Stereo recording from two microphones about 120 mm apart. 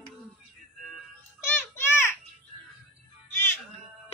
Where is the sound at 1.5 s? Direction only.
20° left (ahead or behind).